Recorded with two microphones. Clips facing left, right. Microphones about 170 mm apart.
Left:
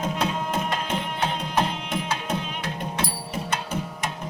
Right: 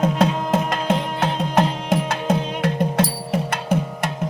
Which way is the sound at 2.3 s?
70° right (ahead or behind).